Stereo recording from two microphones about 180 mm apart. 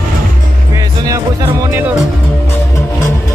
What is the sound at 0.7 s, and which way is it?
Music, 15° right (ahead or behind).